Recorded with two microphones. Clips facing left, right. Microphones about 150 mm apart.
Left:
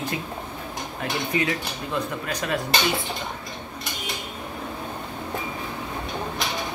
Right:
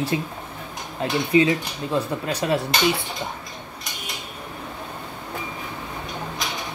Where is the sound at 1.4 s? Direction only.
25° right (ahead or behind).